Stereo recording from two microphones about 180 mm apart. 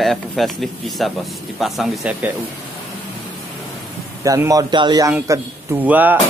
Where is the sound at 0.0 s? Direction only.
Centre (ahead or behind).